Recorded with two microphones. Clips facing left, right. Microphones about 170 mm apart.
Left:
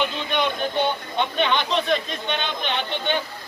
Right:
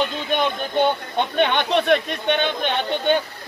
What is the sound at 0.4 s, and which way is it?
Speech, 50° right (ahead or behind).